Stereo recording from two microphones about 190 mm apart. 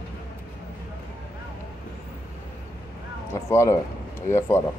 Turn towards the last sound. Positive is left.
turn(degrees=15)  # may be behind; listen again after turning